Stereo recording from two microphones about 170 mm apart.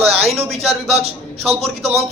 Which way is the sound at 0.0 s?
35° right (ahead or behind).